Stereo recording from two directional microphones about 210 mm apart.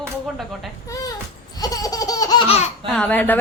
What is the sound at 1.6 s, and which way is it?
Laughter, 15° left (ahead or behind).